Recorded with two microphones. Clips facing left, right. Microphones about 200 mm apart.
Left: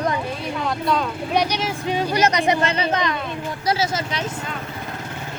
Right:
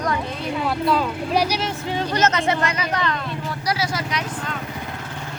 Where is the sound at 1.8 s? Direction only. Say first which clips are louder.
Left 2 dB; 15° left (ahead or behind).